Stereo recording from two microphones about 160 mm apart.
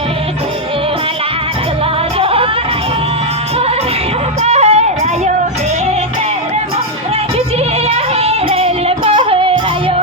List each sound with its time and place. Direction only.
2.1 s music: 35° right (ahead or behind)
4.4 s music: 45° right (ahead or behind)
7.9 s yodeling: 40° right (ahead or behind)